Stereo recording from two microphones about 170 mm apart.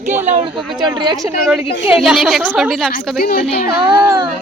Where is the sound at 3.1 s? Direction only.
55° left (ahead or behind).